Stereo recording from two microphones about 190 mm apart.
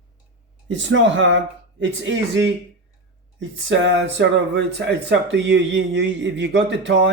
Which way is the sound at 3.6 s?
75° right (ahead or behind).